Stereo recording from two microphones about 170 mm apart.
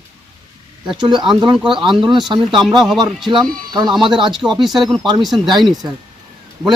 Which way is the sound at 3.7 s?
25° right (ahead or behind).